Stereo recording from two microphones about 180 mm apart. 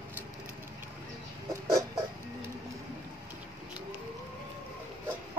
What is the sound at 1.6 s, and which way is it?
Chicken, 20° right (ahead or behind).